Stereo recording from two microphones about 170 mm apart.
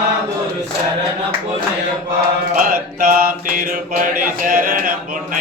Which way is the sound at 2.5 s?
55° right (ahead or behind).